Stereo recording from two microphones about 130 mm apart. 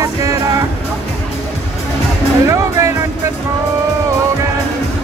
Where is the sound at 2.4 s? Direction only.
25° right (ahead or behind).